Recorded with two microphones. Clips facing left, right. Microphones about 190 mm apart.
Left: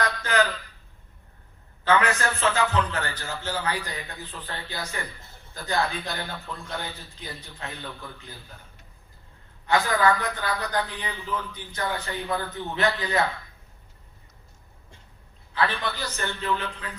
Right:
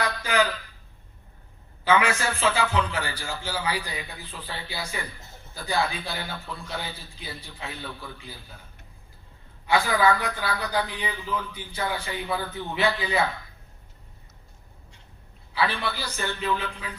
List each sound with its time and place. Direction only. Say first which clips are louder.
0.0 s a sound: even; 10° right (ahead or behind)
1.8 s a man's voice: even; 10° right (ahead or behind)
9.6 s a man's voice: even; 10° right (ahead or behind)
15.5 s a man's voice: even; 10° right (ahead or behind)